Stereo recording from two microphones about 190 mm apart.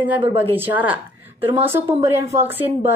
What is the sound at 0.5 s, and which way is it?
A woman's voice, 10° right (ahead or behind).